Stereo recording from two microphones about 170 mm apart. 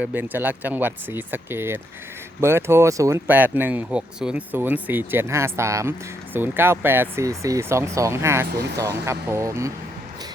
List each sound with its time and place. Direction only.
0.0 s speech: 10° right (ahead or behind)